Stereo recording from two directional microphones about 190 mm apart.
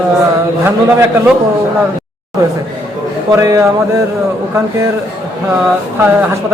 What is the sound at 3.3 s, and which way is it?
Speech, 15° right (ahead or behind).